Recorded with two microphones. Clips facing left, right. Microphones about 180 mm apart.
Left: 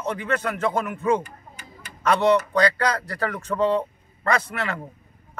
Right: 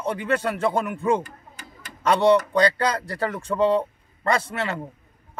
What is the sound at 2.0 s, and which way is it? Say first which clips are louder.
Speech: right 1 dB; 25° right (ahead or behind).